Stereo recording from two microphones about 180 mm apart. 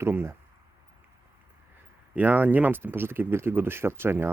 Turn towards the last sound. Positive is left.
turn(degrees=-10)  # may be behind; listen again after turning